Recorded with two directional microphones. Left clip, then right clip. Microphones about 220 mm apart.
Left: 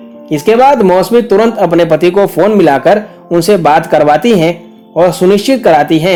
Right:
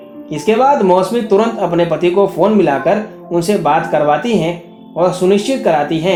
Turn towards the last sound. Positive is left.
turn(degrees=45)  # may be behind; listen again after turning